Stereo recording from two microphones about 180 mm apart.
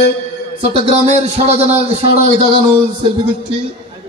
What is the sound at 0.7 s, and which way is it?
A man's voice, 35° right (ahead or behind).